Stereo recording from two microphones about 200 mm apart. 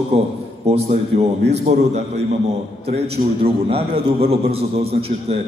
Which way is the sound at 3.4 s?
30° right (ahead or behind).